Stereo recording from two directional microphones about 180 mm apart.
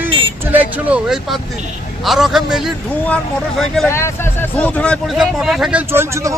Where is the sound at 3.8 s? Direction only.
15° left (ahead or behind); by 5.8 s centre (ahead or behind).